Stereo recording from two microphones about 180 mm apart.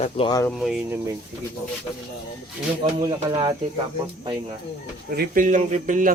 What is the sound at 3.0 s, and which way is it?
Speech, 25° right (ahead or behind).